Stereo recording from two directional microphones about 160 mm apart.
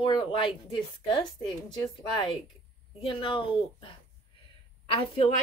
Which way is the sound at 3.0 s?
30° left (ahead or behind).